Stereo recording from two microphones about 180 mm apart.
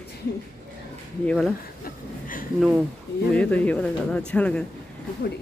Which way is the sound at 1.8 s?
50° left (ahead or behind).